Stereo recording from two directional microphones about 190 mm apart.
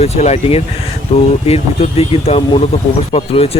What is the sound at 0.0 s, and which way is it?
Speech, 35° left (ahead or behind).